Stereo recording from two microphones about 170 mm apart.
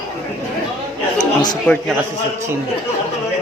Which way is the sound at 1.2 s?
25° left (ahead or behind).